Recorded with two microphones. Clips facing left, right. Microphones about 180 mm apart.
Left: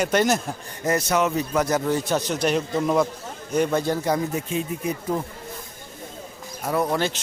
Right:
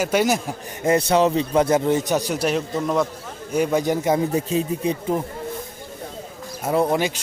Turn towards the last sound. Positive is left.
turn(degrees=-25)  # may be behind; listen again after turning